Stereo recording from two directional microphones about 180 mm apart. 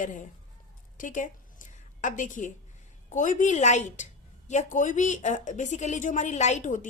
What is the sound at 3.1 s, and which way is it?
A woman's voice, 45° left (ahead or behind).